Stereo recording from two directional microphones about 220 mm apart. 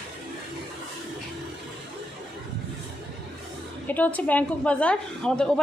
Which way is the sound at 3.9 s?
5° left (ahead or behind).